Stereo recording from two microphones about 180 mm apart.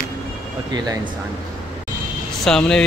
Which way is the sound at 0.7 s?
20° right (ahead or behind).